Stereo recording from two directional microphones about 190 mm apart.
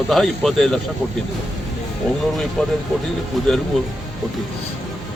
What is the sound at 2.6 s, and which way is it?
Speech, 5° left (ahead or behind).